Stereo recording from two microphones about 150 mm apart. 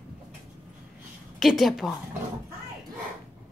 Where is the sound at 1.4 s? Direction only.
Centre (ahead or behind).